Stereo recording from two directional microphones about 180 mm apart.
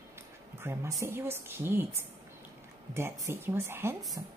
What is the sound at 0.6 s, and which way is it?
A woman's voice, 15° right (ahead or behind).